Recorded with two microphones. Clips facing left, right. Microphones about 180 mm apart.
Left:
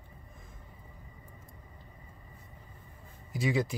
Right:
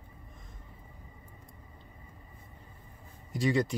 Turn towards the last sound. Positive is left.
turn(degrees=0)  # may be behind; listen again after turning